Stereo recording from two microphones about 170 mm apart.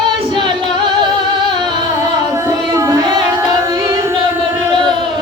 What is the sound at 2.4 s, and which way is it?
Music, 20° right (ahead or behind).